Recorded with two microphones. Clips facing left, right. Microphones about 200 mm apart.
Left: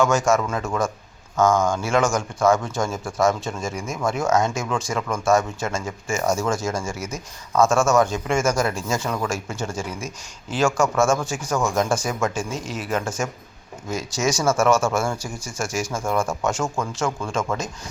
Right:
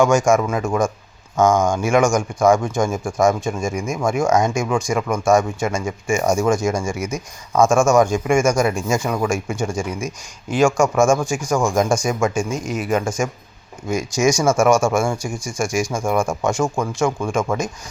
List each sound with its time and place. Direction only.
0.3 s speech: 15° right (ahead or behind)